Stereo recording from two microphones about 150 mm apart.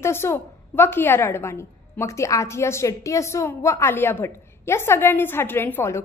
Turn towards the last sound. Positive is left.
turn(degrees=15)  # may be behind; listen again after turning